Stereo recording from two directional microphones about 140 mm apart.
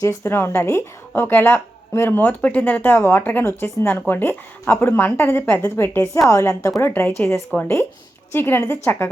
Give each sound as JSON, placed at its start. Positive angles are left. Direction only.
{"t": 0.0, "sound": "a woman's voice", "side_deg": 20}